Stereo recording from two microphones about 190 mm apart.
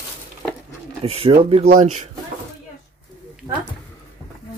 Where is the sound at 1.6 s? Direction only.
45° right (ahead or behind).